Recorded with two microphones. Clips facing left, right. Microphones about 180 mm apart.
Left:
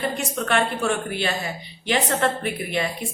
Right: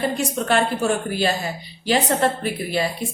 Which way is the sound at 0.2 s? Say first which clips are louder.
Right 3 dB; 35° right (ahead or behind).